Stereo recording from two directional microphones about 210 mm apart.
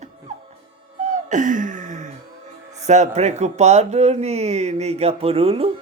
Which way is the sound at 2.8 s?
35° right (ahead or behind).